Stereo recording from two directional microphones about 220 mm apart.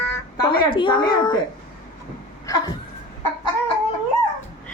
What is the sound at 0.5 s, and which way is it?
Speech, 20° left (ahead or behind).